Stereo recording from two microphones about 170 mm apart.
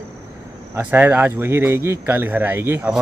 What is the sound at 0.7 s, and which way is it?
Speech, 10° right (ahead or behind).